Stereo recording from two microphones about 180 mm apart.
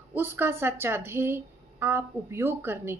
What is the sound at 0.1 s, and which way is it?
A woman's voice, 10° right (ahead or behind).